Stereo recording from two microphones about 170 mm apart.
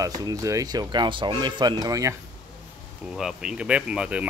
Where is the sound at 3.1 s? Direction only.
5° right (ahead or behind).